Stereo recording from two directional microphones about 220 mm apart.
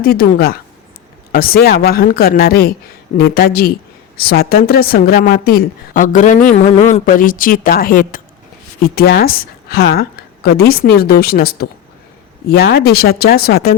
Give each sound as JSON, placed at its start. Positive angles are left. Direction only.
{"t": 0.0, "sound": "a woman's voice", "side_deg": 40}